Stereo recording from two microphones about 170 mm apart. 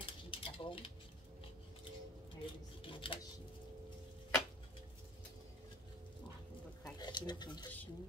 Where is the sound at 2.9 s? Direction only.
30° left (ahead or behind).